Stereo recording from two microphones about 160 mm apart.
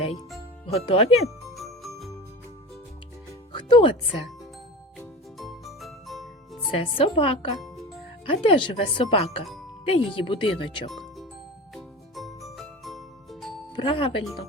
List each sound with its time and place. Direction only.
0.7 s speech: 40° left (ahead or behind)
1.5 s jingle bell: centre (ahead or behind)
3.5 s speech: 30° left (ahead or behind)
5.4 s music: centre (ahead or behind)
6.7 s speech: 35° left (ahead or behind)
10.8 s music: centre (ahead or behind)
13.7 s speech: 35° left (ahead or behind)